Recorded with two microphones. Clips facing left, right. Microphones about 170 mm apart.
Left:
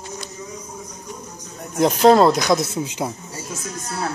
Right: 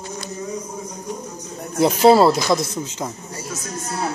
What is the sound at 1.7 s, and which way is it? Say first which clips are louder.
Speech: even; 5° right (ahead or behind).